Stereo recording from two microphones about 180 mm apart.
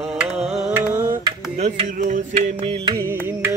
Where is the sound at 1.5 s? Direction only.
35° right (ahead or behind).